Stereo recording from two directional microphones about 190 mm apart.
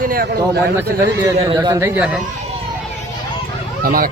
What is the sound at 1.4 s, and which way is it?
Speech, 20° right (ahead or behind).